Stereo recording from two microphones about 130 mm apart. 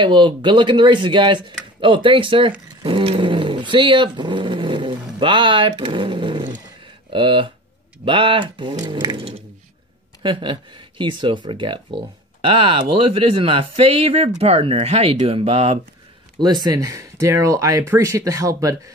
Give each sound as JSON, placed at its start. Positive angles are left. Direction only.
{"t": 0.0, "sound": "speech", "side_deg": -40}
{"t": 10.2, "sound": "speech", "side_deg": -40}
{"t": 16.3, "sound": "speech", "side_deg": -35}